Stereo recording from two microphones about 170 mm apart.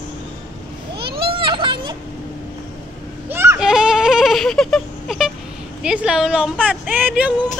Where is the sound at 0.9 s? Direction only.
70° right (ahead or behind).